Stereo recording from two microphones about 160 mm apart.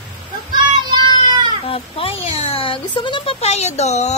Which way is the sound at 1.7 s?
35° left (ahead or behind).